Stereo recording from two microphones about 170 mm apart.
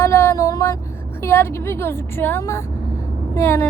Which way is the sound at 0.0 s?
15° left (ahead or behind).